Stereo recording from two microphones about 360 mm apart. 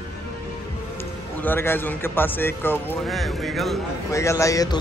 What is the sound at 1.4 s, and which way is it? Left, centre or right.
Speech, centre.